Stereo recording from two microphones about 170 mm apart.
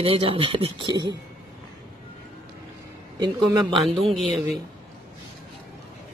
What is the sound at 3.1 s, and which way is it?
Speech, 25° right (ahead or behind).